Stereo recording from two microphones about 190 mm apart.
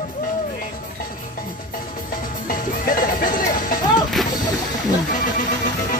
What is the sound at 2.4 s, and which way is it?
Music, 45° left (ahead or behind).